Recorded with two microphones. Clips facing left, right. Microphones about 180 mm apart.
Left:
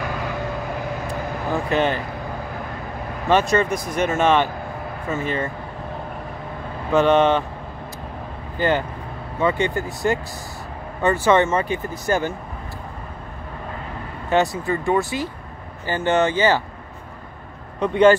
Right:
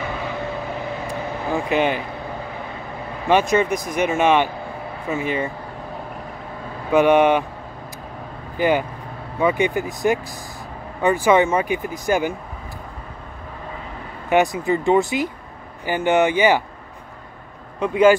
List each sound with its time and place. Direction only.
0.0 s vehicle: centre (ahead or behind)
1.5 s speech: 15° right (ahead or behind)
3.3 s speech: 15° right (ahead or behind)
6.9 s speech: 15° right (ahead or behind)
8.5 s speech: 15° right (ahead or behind)
14.3 s speech: 15° right (ahead or behind)
17.7 s speech: 5° right (ahead or behind)